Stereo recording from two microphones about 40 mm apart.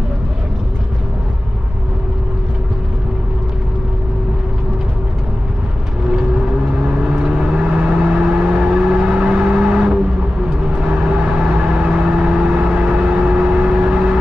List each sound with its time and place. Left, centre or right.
7.2 s vehicle: right